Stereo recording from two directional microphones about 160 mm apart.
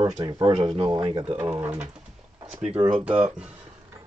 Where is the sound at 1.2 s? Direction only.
10° right (ahead or behind).